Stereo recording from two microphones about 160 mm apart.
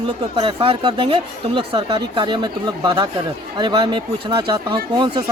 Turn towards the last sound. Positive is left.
turn(degrees=-30)  # may be behind; listen again after turning